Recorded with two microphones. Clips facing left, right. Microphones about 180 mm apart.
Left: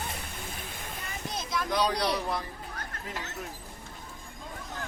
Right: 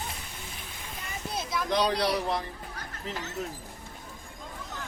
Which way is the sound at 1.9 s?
25° right (ahead or behind).